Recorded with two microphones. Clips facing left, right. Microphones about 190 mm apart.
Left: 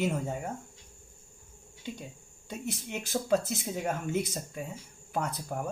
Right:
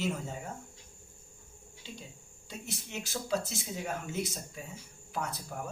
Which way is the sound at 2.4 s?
55° left (ahead or behind).